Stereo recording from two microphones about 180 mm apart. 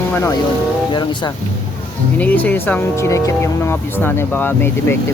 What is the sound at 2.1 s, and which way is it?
Speech, 10° left (ahead or behind).